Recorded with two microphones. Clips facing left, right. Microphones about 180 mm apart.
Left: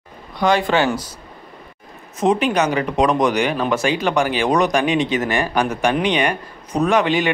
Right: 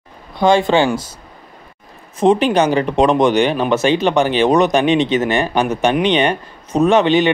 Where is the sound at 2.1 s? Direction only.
30° right (ahead or behind).